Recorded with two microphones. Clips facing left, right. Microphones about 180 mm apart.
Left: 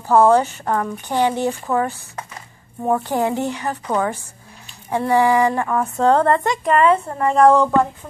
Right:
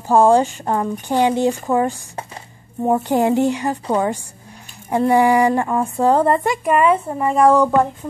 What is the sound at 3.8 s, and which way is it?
Speech, 30° right (ahead or behind).